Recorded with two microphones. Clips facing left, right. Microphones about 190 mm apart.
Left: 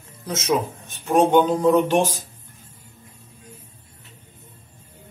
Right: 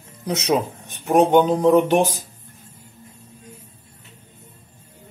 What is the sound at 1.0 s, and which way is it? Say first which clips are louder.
Speech: right 1 dB; 20° right (ahead or behind).